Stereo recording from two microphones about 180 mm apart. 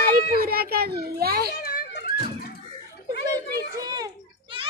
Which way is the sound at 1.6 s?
60° left (ahead or behind).